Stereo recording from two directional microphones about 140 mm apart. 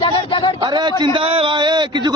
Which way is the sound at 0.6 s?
30° right (ahead or behind).